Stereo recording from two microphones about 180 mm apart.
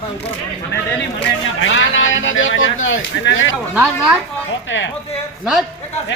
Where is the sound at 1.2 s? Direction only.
90° left.